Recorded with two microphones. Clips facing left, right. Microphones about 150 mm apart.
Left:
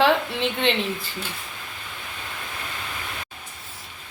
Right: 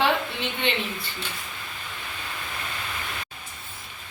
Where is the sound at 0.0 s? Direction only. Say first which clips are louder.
Left 4 dB; 90° left.